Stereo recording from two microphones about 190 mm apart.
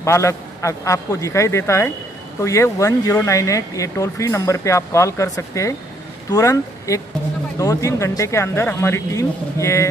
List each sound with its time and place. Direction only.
0.0 s speech: 15° left (ahead or behind)